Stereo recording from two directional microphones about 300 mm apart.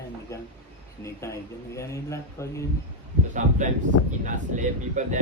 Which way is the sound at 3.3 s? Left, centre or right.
Right.